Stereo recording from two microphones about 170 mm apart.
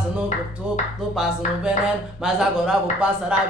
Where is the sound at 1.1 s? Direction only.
Centre (ahead or behind).